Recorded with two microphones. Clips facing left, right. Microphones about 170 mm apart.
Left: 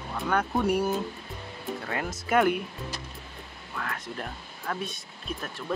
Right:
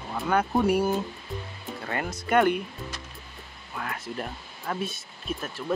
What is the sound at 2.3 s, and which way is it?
Music, 5° left (ahead or behind).